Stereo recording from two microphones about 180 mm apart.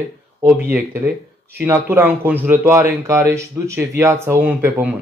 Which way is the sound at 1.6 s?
15° right (ahead or behind).